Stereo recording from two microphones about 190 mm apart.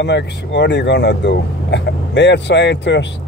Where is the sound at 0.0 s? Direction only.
65° left (ahead or behind).